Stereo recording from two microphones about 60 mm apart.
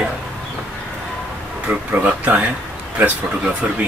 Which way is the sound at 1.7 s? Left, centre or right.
Right.